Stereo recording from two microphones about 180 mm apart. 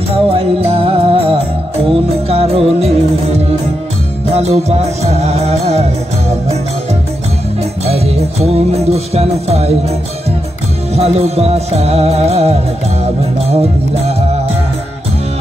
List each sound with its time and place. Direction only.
0.3 s music: 30° right (ahead or behind)
7.8 s music: 35° right (ahead or behind)
11.0 s music: 35° right (ahead or behind)